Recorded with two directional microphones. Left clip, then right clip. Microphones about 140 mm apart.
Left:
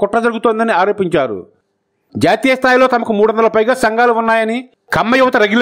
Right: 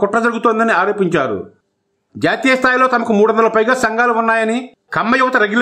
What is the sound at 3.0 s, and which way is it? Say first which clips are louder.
Speech: even; 30° left (ahead or behind).